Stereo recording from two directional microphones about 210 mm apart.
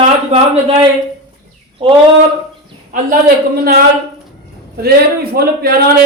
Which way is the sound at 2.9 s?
40° right (ahead or behind).